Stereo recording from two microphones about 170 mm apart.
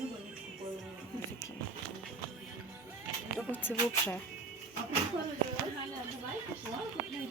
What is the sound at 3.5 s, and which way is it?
Speech, 10° left (ahead or behind).